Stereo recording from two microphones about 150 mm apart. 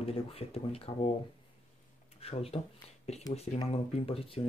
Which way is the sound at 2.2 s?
40° left (ahead or behind).